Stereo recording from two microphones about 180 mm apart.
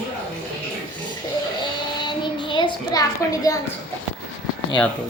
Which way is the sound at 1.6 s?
25° left (ahead or behind).